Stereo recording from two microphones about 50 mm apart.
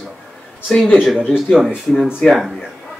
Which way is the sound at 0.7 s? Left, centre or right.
Centre.